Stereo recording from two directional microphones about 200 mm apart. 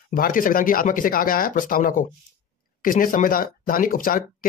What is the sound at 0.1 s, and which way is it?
Speech, 45° left (ahead or behind).